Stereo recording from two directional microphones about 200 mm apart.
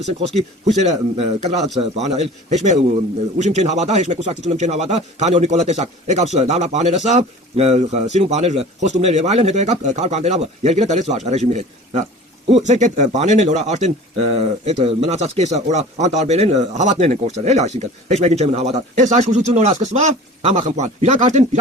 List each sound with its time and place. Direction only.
0.0 s speech: 30° right (ahead or behind)